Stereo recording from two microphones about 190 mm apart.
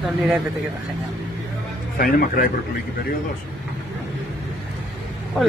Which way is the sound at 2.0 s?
50° left (ahead or behind).